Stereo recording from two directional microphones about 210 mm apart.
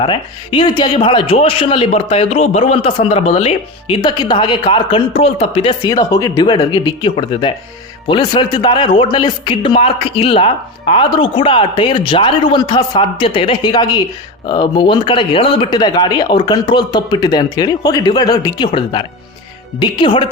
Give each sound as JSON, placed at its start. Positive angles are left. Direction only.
{"t": 0.0, "sound": "a man's voice", "side_deg": 25}